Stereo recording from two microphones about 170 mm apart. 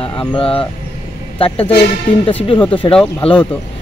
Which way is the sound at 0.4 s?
30° left (ahead or behind).